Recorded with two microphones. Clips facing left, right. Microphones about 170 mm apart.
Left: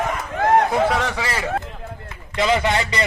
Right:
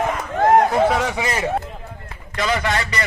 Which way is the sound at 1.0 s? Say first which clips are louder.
Right 2 dB; 20° right (ahead or behind).